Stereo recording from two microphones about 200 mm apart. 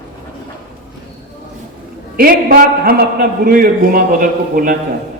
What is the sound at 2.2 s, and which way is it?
A man's voice, 45° right (ahead or behind).